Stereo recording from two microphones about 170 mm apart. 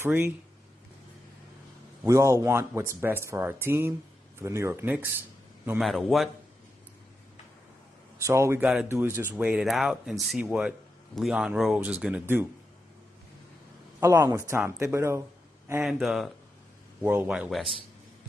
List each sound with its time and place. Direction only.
0.0 s speech: 15° right (ahead or behind)
2.0 s speech: 20° right (ahead or behind)
5.8 s speech: centre (ahead or behind)
8.2 s speech: 15° right (ahead or behind)
13.9 s speech: 15° right (ahead or behind)
15.8 s speech: centre (ahead or behind)